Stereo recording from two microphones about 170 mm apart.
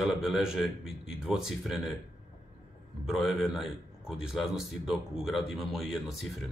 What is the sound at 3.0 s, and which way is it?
Speech, centre (ahead or behind).